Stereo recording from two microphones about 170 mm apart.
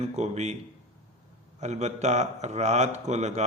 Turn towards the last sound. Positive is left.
turn(degrees=-40)  # may be behind; listen again after turning